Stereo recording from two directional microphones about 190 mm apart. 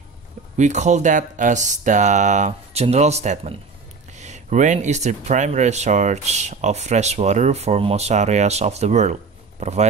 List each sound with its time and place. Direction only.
0.6 s speech: 40° right (ahead or behind)